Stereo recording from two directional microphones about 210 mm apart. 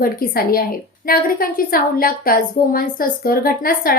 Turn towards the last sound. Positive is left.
turn(degrees=45)  # may be behind; listen again after turning